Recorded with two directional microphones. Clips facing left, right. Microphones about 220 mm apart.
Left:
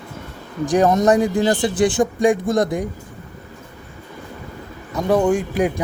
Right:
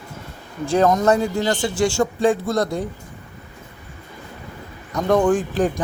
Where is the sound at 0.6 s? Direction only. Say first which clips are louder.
Left 1 dB; 15° left (ahead or behind).